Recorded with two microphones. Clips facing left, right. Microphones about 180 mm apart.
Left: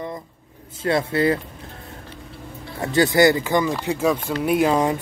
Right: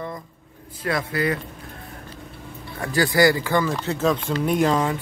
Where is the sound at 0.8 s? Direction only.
25° left (ahead or behind).